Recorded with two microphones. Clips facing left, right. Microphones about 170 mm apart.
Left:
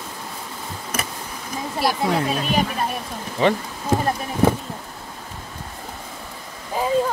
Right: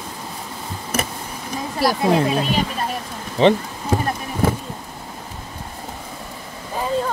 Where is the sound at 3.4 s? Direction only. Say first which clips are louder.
Right 4 dB; 25° right (ahead or behind).